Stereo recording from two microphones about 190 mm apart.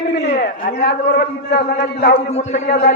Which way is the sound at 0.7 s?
55° left (ahead or behind).